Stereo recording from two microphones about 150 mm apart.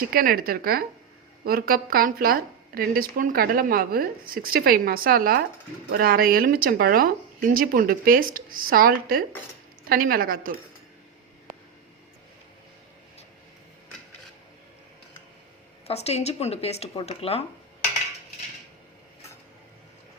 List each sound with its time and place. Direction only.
0.1 s a woman's voice: 75° right (ahead or behind)
15.9 s a woman's voice: 45° left (ahead or behind)